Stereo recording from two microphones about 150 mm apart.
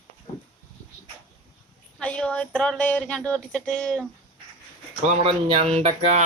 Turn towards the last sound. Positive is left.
turn(degrees=-50)  # may be behind; listen again after turning